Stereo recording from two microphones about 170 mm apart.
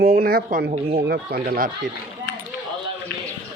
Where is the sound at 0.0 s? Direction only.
60° right (ahead or behind).